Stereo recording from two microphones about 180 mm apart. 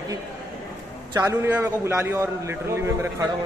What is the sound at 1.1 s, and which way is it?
A man's voice, 15° right (ahead or behind).